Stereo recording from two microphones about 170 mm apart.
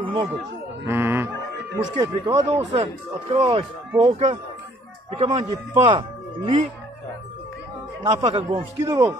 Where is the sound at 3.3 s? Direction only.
35° right (ahead or behind).